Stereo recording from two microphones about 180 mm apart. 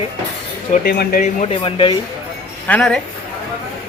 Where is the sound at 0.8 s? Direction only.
60° left (ahead or behind).